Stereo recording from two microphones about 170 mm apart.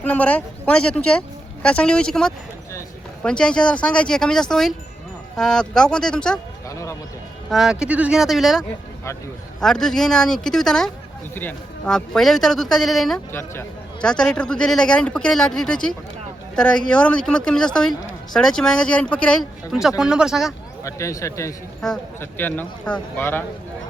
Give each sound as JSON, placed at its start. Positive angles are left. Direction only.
{"t": 0.0, "sound": "speech", "side_deg": 10}
{"t": 6.7, "sound": "a sound", "side_deg": 15}
{"t": 7.5, "sound": "speech", "side_deg": -5}
{"t": 13.3, "sound": "a man's voice", "side_deg": 15}
{"t": 20.8, "sound": "speech", "side_deg": 20}